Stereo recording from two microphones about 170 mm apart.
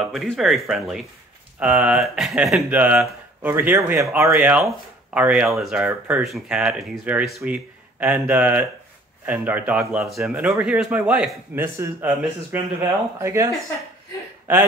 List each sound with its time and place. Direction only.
0.0 s speech: centre (ahead or behind); by 13.5 s 15° right (ahead or behind)
14.5 s speech: 15° right (ahead or behind)